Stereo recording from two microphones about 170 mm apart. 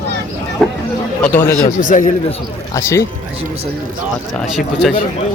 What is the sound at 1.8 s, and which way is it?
Speech, 50° left (ahead or behind).